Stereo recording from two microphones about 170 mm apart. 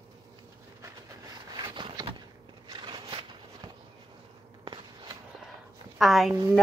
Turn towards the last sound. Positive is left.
turn(degrees=0)  # may be behind; listen again after turning